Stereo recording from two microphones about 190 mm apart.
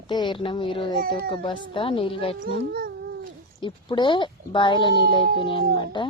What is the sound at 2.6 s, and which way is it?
Cat, 55° right (ahead or behind).